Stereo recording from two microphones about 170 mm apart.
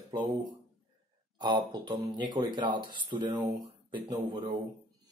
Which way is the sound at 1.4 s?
25° right (ahead or behind).